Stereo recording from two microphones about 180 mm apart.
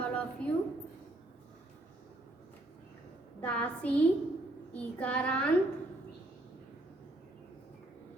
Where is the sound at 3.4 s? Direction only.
5° left (ahead or behind).